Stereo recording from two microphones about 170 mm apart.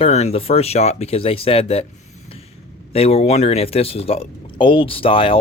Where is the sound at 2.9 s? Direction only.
35° left (ahead or behind).